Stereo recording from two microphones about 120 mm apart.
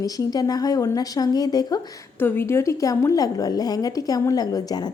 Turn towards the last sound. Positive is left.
turn(degrees=35)  # may be behind; listen again after turning